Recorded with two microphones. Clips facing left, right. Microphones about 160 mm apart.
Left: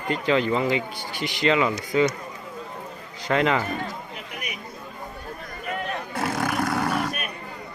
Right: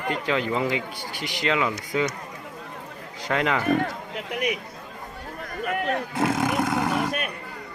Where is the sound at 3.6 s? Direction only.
60° right (ahead or behind); by 4.6 s 90° right.